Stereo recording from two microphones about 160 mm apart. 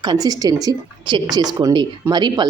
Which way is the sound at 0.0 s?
25° right (ahead or behind).